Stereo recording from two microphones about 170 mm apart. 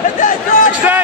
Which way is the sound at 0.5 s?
50° left (ahead or behind).